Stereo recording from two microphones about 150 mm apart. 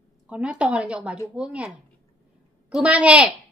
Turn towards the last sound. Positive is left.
turn(degrees=-10)  # may be behind; listen again after turning